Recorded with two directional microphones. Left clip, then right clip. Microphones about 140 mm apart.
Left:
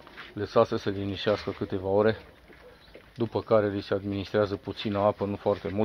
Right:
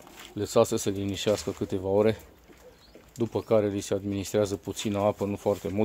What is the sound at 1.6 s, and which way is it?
Speech, 45° right (ahead or behind).